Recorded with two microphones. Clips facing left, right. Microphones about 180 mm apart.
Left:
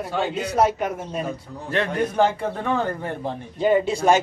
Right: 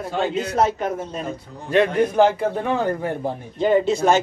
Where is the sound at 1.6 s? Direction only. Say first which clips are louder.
Right 6 dB; 15° right (ahead or behind).